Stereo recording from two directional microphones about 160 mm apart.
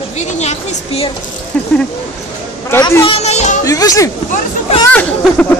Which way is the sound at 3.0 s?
40° left (ahead or behind).